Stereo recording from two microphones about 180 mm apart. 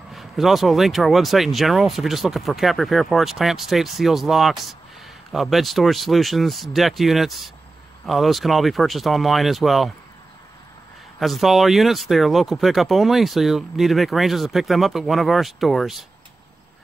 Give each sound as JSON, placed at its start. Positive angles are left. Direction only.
{"t": 0.1, "sound": "speech", "side_deg": 0}
{"t": 11.1, "sound": "speech", "side_deg": 0}